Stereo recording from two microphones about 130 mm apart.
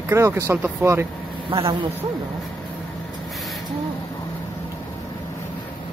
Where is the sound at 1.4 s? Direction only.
45° right (ahead or behind).